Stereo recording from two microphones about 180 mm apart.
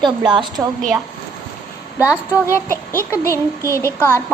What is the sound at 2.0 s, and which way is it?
Speech, 15° left (ahead or behind).